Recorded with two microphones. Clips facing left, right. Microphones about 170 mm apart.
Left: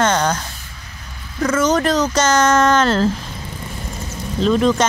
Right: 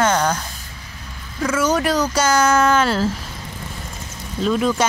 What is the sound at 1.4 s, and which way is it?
Speech, 10° right (ahead or behind).